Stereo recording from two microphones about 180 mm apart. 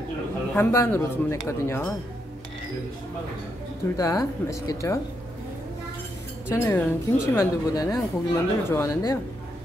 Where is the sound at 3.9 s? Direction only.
20° left (ahead or behind).